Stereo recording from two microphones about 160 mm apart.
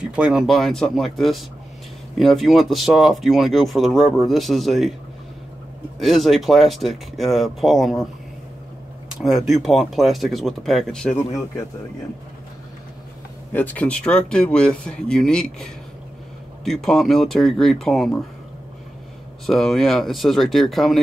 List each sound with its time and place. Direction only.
0.0 s speech: 5° right (ahead or behind)
5.9 s speech: centre (ahead or behind)
9.5 s speech: centre (ahead or behind)
11.1 s speech: 20° left (ahead or behind)
13.5 s speech: 10° left (ahead or behind)
19.4 s speech: centre (ahead or behind)